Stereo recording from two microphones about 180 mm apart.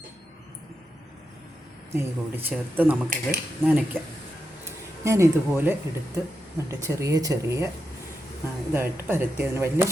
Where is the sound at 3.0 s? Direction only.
50° right (ahead or behind).